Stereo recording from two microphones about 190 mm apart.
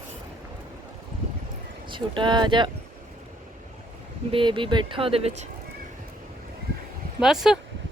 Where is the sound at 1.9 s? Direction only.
25° right (ahead or behind).